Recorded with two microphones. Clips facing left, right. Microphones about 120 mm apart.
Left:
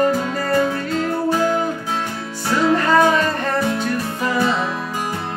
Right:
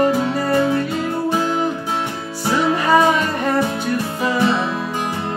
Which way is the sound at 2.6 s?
10° right (ahead or behind).